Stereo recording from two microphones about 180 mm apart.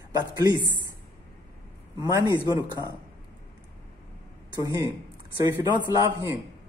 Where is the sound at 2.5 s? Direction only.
20° right (ahead or behind).